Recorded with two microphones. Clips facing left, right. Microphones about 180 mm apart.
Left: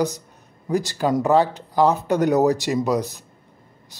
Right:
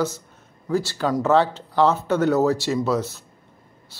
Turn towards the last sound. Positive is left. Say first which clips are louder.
# left 1 dB
turn(degrees=15)  # may be behind; listen again after turning